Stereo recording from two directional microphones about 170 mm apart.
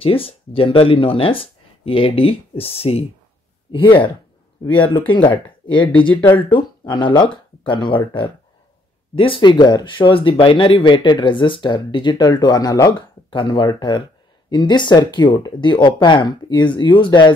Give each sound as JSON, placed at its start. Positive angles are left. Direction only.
{"t": 0.0, "sound": "speech", "side_deg": 35}
{"t": 6.5, "sound": "speech", "side_deg": 30}